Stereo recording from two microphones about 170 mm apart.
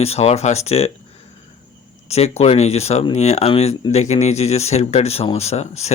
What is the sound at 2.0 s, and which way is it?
Speech, 40° left (ahead or behind).